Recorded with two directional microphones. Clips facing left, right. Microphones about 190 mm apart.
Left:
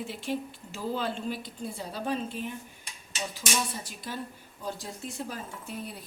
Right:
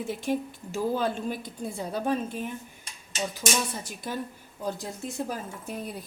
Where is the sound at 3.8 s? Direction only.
50° right (ahead or behind).